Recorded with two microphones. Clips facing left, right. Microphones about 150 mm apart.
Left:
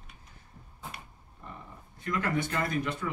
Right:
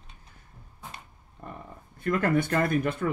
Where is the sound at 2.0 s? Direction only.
55° right (ahead or behind).